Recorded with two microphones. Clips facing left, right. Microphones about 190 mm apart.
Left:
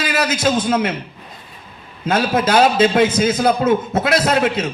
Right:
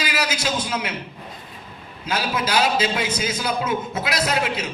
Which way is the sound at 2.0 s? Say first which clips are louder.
Left 8 dB; 55° left (ahead or behind).